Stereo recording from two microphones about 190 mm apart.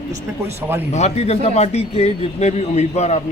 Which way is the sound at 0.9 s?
35° left (ahead or behind).